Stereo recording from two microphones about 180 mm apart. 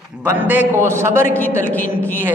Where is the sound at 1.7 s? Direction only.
10° left (ahead or behind).